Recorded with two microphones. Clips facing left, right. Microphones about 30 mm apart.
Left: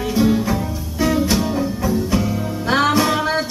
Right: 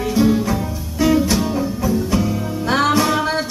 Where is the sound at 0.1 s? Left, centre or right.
Centre.